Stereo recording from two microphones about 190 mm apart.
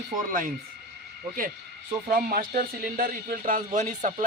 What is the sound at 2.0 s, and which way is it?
A man's voice, 50° right (ahead or behind).